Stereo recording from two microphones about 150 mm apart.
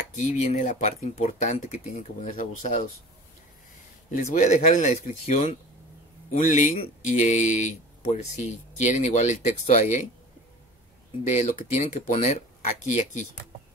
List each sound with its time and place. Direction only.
0.1 s speech: 50° left (ahead or behind)
4.1 s speech: 55° left (ahead or behind)
11.2 s speech: 55° left (ahead or behind)